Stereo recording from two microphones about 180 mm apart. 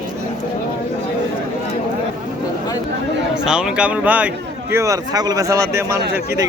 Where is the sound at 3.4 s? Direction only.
5° right (ahead or behind).